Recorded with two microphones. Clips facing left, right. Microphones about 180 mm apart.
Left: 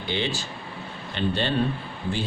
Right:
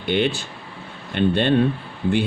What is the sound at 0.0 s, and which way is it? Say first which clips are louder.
Speech: right 7 dB; 60° right (ahead or behind).